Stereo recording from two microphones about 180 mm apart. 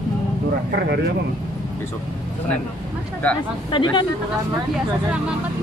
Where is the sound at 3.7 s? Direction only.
25° left (ahead or behind).